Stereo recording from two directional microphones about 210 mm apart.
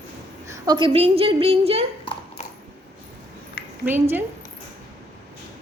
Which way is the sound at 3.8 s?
10° right (ahead or behind).